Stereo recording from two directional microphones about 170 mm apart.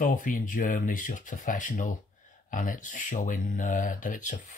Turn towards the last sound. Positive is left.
turn(degrees=50)  # may be behind; listen again after turning